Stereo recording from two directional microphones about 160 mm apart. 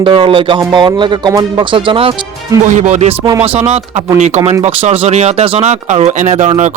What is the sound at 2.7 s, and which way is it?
Speech, 50° right (ahead or behind).